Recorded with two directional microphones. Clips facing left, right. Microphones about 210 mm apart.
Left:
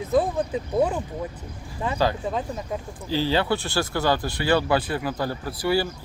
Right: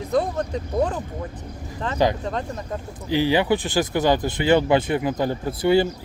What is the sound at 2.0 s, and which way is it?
Speech, 20° right (ahead or behind).